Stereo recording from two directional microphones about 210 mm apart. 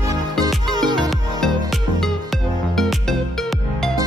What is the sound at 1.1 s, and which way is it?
Music, centre (ahead or behind).